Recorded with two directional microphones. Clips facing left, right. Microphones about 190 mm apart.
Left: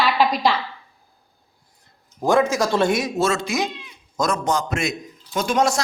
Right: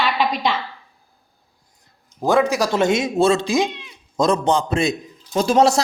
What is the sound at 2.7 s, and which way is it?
Speech, 20° right (ahead or behind).